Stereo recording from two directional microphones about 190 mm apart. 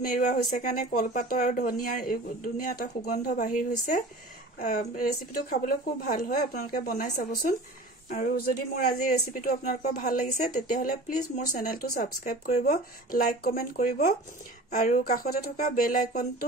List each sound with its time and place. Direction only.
0.3 s speech: 45° left (ahead or behind)